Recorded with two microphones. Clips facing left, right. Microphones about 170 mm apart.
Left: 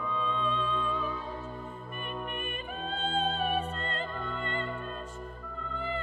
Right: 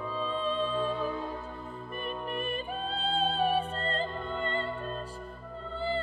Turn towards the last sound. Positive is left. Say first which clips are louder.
# right 3 dB
turn(degrees=-30)  # may be behind; listen again after turning